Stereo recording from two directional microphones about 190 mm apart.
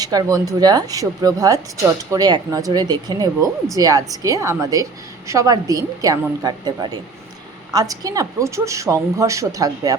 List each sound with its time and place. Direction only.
0.0 s a woman's voice: 20° right (ahead or behind)